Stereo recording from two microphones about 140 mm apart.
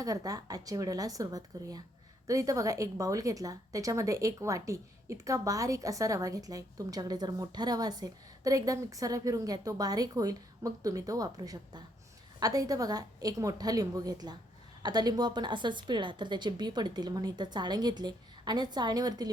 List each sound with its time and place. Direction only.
0.0 s a woman's voice: 25° right (ahead or behind)